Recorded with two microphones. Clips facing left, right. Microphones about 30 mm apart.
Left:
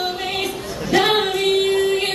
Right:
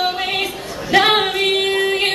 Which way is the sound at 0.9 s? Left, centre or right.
Right.